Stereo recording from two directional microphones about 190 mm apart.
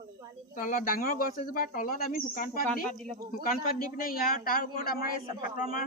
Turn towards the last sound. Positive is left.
turn(degrees=45)  # may be behind; listen again after turning